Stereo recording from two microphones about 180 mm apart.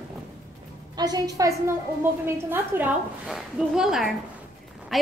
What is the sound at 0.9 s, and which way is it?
A woman's voice, 20° right (ahead or behind).